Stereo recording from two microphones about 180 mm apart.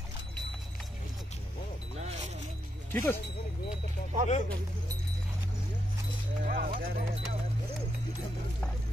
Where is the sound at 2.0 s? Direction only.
40° right (ahead or behind).